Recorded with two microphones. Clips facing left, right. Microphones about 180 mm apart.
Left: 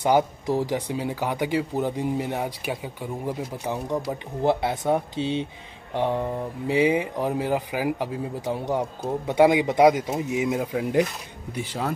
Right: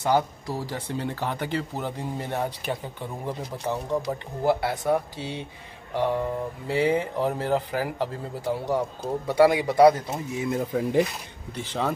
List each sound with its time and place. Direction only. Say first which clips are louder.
0.0 s speech: left 3 dB; 15° left (ahead or behind)
4.4 s speech: left 1 dB; 20° left (ahead or behind)